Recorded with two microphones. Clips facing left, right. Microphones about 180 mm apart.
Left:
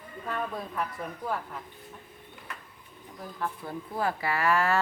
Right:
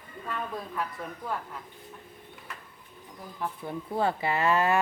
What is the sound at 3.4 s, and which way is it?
Speech, 25° right (ahead or behind).